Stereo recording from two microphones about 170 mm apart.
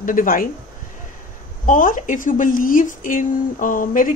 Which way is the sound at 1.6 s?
50° left (ahead or behind).